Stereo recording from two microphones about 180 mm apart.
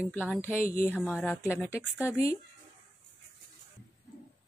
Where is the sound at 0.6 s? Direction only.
50° left (ahead or behind).